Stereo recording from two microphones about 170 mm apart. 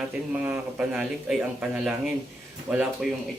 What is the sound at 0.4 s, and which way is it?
A man's voice, 10° right (ahead or behind).